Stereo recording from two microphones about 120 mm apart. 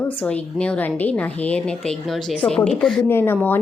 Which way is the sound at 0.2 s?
10° left (ahead or behind).